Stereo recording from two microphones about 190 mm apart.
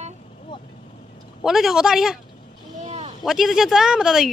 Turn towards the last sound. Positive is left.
turn(degrees=-5)  # may be behind; listen again after turning